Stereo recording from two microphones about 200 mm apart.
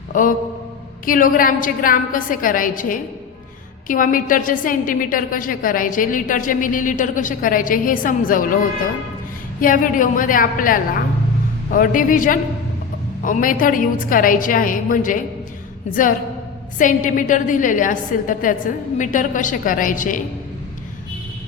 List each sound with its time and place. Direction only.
0.1 s a man's voice: 40° left (ahead or behind)
9.6 s a woman's voice: 45° left (ahead or behind)
16.7 s a woman's voice: 40° left (ahead or behind)